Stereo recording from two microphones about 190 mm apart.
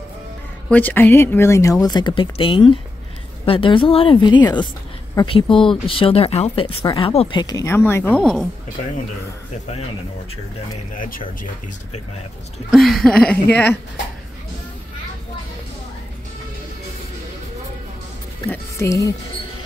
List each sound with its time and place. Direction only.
0.7 s speech: 10° left (ahead or behind)
11.0 s speech: 50° left (ahead or behind)
12.7 s speech: centre (ahead or behind)
18.5 s speech: 15° left (ahead or behind)